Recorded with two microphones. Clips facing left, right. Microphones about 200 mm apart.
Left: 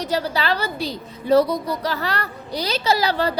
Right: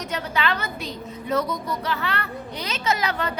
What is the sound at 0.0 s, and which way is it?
A woman's voice, 35° left (ahead or behind).